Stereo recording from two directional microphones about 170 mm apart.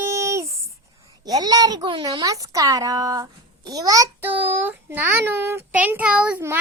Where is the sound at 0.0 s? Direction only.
15° right (ahead or behind).